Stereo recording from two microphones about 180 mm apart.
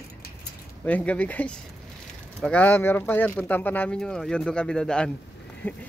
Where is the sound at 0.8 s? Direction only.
10° left (ahead or behind).